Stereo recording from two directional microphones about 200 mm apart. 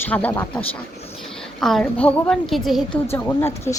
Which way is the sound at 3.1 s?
10° left (ahead or behind).